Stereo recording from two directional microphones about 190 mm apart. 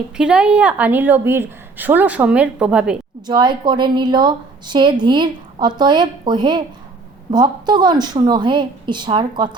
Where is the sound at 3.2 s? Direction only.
25° right (ahead or behind).